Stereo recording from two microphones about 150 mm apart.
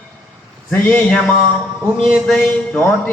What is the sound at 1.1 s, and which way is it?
Speech, 5° left (ahead or behind).